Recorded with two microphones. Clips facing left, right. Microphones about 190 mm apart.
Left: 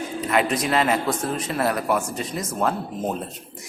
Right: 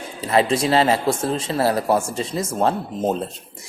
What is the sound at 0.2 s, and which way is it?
Speech, 30° right (ahead or behind).